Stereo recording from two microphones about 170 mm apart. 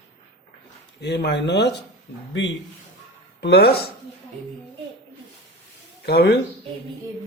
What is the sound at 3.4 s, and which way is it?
Speech, 75° left (ahead or behind).